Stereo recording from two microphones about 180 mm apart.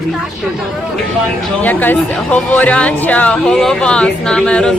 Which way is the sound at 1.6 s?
10° left (ahead or behind).